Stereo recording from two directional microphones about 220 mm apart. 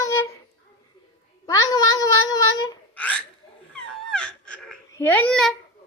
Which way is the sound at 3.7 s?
5° left (ahead or behind).